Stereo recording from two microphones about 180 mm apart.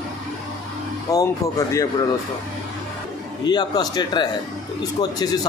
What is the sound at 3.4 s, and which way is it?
A man's voice, 25° left (ahead or behind).